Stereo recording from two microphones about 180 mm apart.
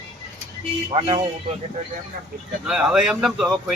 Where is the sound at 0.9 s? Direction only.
30° right (ahead or behind).